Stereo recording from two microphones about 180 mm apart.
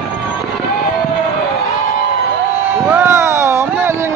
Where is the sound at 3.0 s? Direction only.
15° right (ahead or behind).